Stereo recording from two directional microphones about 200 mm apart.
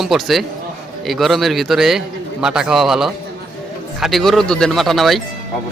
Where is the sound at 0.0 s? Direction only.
Centre (ahead or behind).